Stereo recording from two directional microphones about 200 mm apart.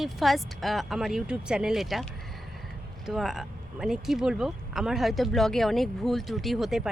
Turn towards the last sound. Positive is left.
turn(degrees=0)  # may be behind; listen again after turning